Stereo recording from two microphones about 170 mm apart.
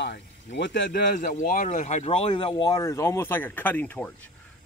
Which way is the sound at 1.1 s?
50° left (ahead or behind).